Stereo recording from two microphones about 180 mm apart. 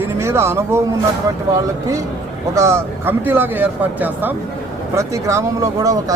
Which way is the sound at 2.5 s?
15° right (ahead or behind).